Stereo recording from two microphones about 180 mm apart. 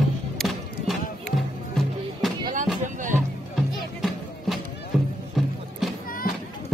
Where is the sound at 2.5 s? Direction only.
45° right (ahead or behind).